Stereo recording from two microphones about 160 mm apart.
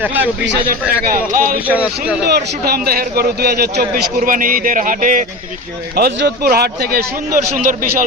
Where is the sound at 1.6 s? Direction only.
10° right (ahead or behind).